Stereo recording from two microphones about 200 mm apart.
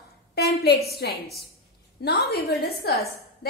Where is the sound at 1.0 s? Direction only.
50° left (ahead or behind).